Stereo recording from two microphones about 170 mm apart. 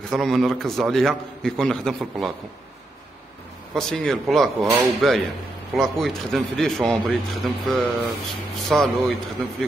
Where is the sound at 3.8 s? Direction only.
Centre (ahead or behind).